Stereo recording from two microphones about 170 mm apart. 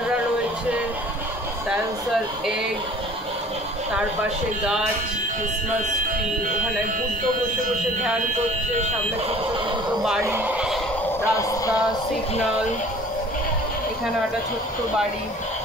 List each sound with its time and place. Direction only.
10.2 s speech: 10° right (ahead or behind)
11.3 s speech: 20° left (ahead or behind)